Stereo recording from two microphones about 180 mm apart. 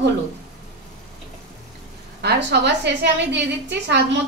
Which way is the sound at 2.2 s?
70° right (ahead or behind).